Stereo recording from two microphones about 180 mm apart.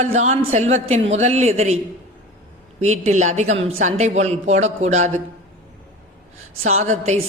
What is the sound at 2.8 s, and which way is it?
A man's voice, 40° right (ahead or behind).